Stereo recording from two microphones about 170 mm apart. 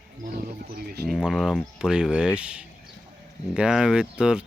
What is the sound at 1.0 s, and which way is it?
Speech, centre (ahead or behind).